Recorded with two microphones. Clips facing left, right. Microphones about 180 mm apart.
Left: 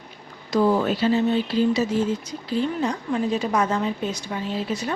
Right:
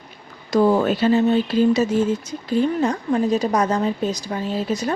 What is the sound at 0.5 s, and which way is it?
A woman's voice, 45° right (ahead or behind).